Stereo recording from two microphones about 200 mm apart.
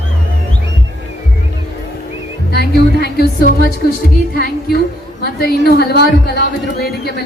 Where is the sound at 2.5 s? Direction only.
55° left (ahead or behind).